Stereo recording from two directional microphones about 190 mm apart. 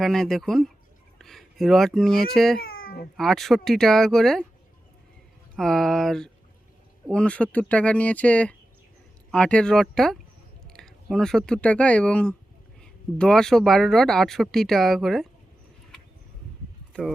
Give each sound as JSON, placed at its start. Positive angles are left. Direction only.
{"t": 0.0, "sound": "speech", "side_deg": 0}
{"t": 2.6, "sound": "cat", "side_deg": 50}
{"t": 3.2, "sound": "speech", "side_deg": 0}
{"t": 5.5, "sound": "speech", "side_deg": 0}